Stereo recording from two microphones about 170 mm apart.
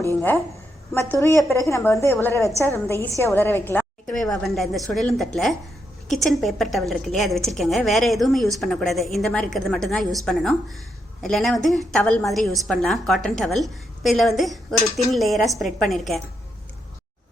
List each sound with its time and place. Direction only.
0.2 s a woman's voice: 10° left (ahead or behind)